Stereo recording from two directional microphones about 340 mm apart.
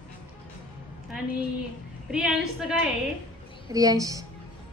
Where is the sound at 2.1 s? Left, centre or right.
Centre.